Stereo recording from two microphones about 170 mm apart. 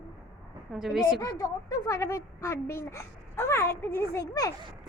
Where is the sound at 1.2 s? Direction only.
20° left (ahead or behind).